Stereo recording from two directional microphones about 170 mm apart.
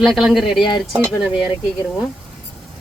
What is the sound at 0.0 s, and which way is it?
Speech, centre (ahead or behind).